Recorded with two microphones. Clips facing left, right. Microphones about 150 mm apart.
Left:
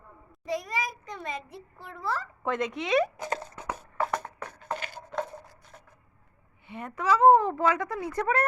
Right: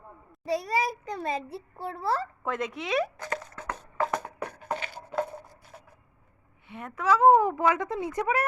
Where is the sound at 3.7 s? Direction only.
10° left (ahead or behind).